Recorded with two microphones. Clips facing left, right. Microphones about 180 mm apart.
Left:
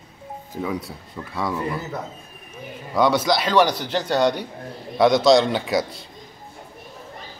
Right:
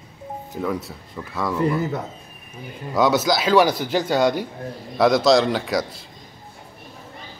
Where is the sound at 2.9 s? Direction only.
Centre (ahead or behind).